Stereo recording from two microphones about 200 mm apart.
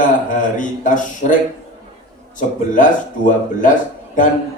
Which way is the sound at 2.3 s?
40° left (ahead or behind).